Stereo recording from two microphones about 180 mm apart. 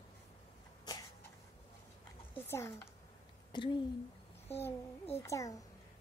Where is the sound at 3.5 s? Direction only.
25° left (ahead or behind).